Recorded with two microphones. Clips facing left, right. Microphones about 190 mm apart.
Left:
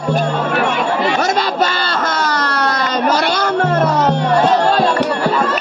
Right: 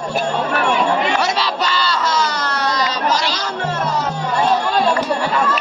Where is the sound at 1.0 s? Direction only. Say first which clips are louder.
Left 3 dB; 45° left (ahead or behind); by 4.3 s 60° left (ahead or behind).